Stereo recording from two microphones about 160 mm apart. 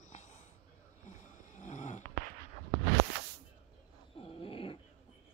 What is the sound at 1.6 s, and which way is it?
Snoring, 50° left (ahead or behind).